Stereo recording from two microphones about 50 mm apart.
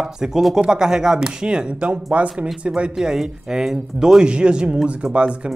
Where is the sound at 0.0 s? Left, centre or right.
Centre.